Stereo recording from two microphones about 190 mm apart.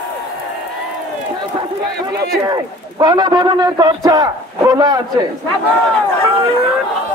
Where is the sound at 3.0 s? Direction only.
20° right (ahead or behind).